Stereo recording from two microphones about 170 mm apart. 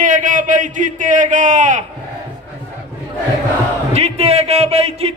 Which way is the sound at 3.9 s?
40° right (ahead or behind).